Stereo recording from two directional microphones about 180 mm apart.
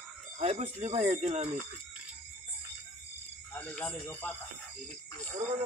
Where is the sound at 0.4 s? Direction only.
40° right (ahead or behind).